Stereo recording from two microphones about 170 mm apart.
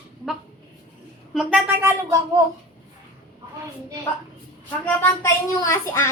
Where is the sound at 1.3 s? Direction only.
5° right (ahead or behind).